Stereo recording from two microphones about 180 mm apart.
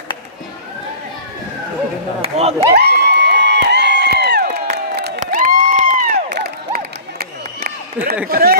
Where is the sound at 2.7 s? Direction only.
65° right (ahead or behind).